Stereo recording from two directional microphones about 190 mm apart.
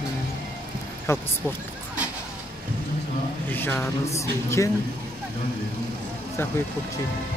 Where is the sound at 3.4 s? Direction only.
10° left (ahead or behind).